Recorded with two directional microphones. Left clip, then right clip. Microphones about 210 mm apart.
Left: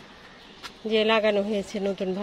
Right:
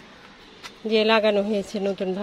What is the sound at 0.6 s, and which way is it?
Speech, 10° right (ahead or behind).